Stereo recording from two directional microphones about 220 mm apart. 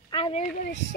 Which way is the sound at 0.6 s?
55° left (ahead or behind).